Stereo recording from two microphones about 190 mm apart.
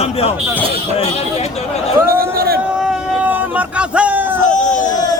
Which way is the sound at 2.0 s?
50° right (ahead or behind).